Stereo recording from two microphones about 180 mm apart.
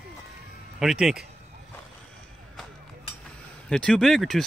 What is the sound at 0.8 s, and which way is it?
Speech, centre (ahead or behind).